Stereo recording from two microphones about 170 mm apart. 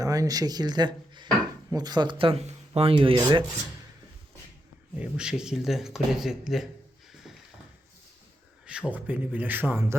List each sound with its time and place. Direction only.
0.0 s speech: 20° right (ahead or behind)
4.9 s speech: 5° right (ahead or behind)
7.1 s a sound: centre (ahead or behind)
8.6 s a man's voice: 5° right (ahead or behind)